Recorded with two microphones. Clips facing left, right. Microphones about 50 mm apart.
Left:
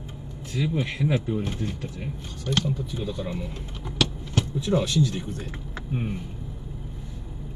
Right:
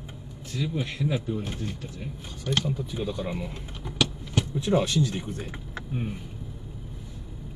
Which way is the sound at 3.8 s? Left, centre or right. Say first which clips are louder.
Left 1 dB; centre.